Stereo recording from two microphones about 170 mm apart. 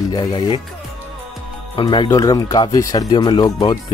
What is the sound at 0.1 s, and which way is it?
Speech, 25° left (ahead or behind).